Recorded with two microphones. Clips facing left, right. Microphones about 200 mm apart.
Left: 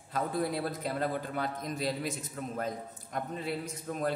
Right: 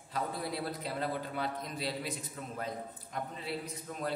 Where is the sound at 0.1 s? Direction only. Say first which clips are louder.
Left 5 dB; 50° left (ahead or behind).